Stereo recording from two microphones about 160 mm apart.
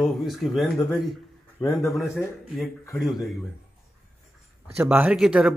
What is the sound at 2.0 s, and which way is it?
Speech, 15° left (ahead or behind).